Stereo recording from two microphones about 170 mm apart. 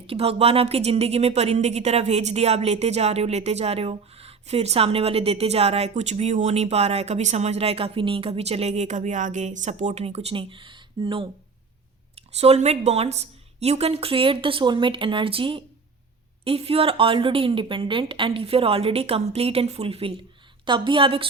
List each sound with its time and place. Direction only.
0.1 s a woman's voice: 35° right (ahead or behind)
12.4 s a woman's voice: 40° right (ahead or behind)